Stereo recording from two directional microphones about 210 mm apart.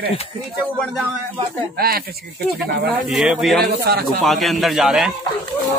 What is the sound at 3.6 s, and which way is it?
Speech, 50° right (ahead or behind).